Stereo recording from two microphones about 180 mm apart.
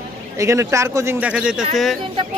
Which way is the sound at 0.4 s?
15° right (ahead or behind).